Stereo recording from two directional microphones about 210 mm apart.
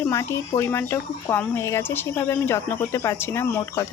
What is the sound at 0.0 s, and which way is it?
Speech, 15° left (ahead or behind).